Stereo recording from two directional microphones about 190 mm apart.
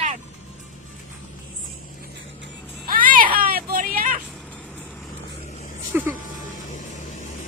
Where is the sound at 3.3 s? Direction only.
50° right (ahead or behind).